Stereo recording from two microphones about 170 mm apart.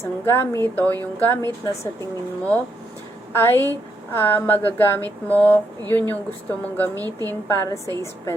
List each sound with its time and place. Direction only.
0.0 s a woman's voice: 15° left (ahead or behind)
3.3 s a woman's voice: 10° left (ahead or behind)
7.0 s a woman's voice: 20° right (ahead or behind)
7.4 s a woman's voice: 15° left (ahead or behind)